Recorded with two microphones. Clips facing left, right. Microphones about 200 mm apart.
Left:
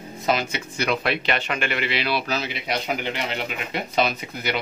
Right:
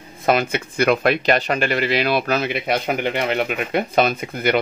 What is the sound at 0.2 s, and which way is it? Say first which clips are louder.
Speech: right 5 dB; 55° right (ahead or behind).